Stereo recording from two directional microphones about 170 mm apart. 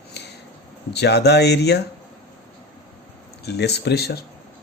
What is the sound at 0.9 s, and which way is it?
Speech, 75° left (ahead or behind).